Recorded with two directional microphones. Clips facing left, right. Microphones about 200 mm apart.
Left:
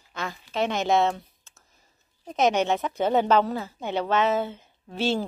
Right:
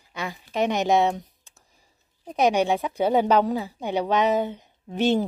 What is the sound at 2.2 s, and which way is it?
Speech, 15° right (ahead or behind).